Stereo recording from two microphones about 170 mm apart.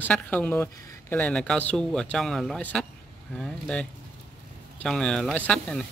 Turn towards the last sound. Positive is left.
turn(degrees=5)  # may be behind; listen again after turning